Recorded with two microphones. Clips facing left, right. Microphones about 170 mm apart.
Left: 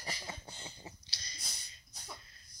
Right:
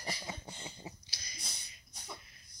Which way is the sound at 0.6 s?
10° right (ahead or behind).